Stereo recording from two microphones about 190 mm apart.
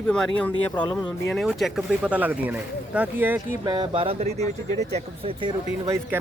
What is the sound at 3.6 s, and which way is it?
Speech, 20° right (ahead or behind).